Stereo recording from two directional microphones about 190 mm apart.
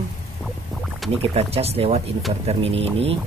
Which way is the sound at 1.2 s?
30° right (ahead or behind).